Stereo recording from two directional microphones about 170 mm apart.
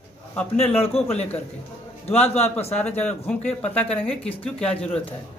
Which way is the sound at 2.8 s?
10° left (ahead or behind).